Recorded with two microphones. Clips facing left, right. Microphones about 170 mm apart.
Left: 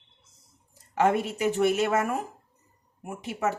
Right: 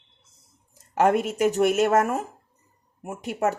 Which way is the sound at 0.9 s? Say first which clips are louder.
Right 3 dB; 45° right (ahead or behind).